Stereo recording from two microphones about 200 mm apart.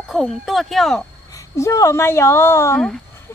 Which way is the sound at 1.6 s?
15° left (ahead or behind).